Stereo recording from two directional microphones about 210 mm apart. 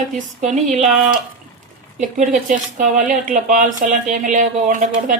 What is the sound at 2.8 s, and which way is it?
Speech, 35° right (ahead or behind).